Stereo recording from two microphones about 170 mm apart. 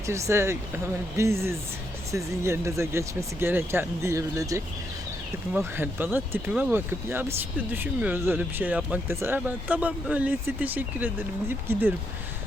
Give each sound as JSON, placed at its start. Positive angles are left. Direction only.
{"t": 0.0, "sound": "speech", "side_deg": -15}